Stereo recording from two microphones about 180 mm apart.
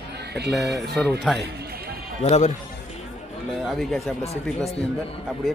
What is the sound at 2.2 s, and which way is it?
Speech, 40° left (ahead or behind).